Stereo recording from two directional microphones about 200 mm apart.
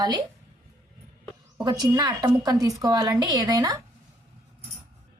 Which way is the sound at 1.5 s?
20° right (ahead or behind).